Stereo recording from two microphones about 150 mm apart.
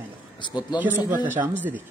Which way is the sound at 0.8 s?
15° right (ahead or behind).